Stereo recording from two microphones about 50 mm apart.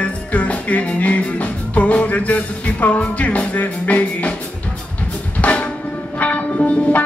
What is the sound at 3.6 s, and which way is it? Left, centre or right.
Music, left.